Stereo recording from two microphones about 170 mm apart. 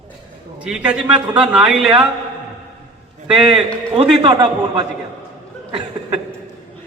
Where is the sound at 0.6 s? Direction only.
5° right (ahead or behind).